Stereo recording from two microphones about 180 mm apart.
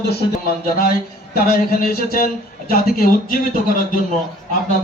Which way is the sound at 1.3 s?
55° left (ahead or behind).